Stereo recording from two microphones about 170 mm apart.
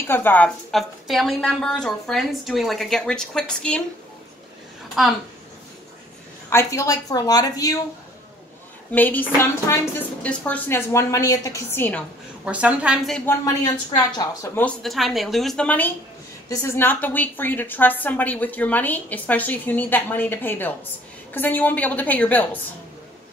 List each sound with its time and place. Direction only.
0.0 s a woman's voice: 10° left (ahead or behind)
5.0 s a woman's voice: centre (ahead or behind)
6.5 s speech: 20° left (ahead or behind)
8.9 s a woman's voice: 10° left (ahead or behind)
12.4 s a woman's voice: 5° right (ahead or behind)
13.2 s a woman's voice: 15° left (ahead or behind)
13.9 s speech: 25° left (ahead or behind)
14.5 s a woman's voice: 5° left (ahead or behind)